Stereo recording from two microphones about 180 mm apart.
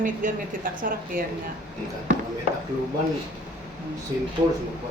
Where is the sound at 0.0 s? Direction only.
50° right (ahead or behind).